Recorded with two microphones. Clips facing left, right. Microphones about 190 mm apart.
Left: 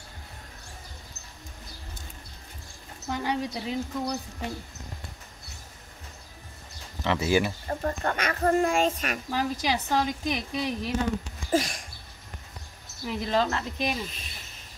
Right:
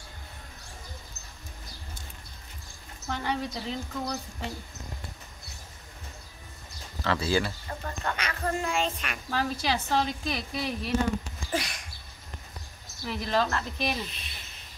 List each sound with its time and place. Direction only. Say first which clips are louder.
3.1 s a woman's voice: left 2 dB; 15° left (ahead or behind)
7.0 s a woman's voice: left 3 dB; 20° left (ahead or behind)
7.6 s speech: left 6 dB; 45° left (ahead or behind)
9.3 s a woman's voice: even; 15° left (ahead or behind)
11.5 s a sound: left 6 dB; 45° left (ahead or behind)
13.0 s a woman's voice: left 2 dB; 20° left (ahead or behind)
14.0 s speech: left 3 dB; 45° left (ahead or behind)